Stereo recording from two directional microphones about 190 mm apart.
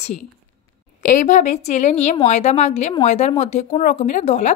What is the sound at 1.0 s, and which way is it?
A woman's voice, 40° left (ahead or behind).